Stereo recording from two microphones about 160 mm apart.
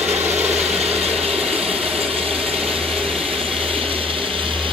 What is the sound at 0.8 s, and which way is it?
Ratchet, 40° right (ahead or behind).